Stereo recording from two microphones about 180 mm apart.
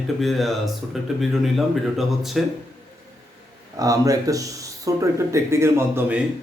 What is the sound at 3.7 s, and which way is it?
Speech, 20° right (ahead or behind).